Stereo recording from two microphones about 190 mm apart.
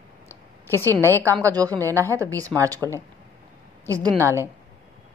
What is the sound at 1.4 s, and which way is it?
A woman's voice, 15° right (ahead or behind).